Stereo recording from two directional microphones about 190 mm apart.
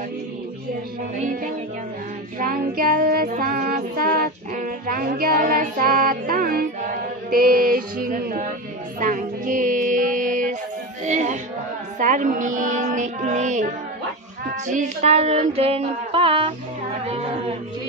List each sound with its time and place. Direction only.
1.1 s music: 45° right (ahead or behind)
2.3 s child singing: 50° right (ahead or behind)
7.2 s a sound: 50° right (ahead or behind)
9.0 s music: 45° right (ahead or behind)